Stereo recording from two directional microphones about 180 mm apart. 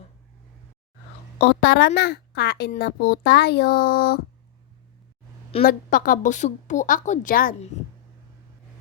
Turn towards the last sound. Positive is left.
turn(degrees=50)  # may be behind; listen again after turning